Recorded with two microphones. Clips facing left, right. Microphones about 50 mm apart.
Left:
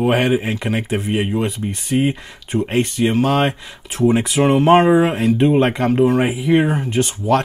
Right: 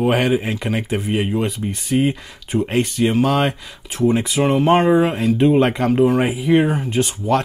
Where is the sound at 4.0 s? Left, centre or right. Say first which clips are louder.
Left 2 dB; centre.